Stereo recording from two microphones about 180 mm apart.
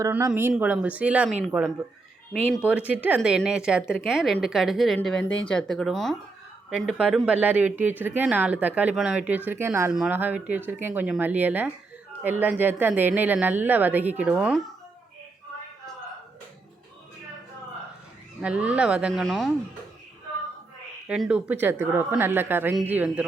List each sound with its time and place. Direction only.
0.0 s speech: 15° right (ahead or behind)
2.3 s speech: 5° left (ahead or behind)
2.6 s a woman's voice: 5° right (ahead or behind)
18.4 s a woman's voice: 5° right (ahead or behind)
21.1 s speech: 5° right (ahead or behind)